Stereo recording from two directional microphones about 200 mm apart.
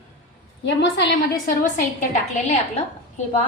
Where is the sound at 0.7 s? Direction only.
55° left (ahead or behind).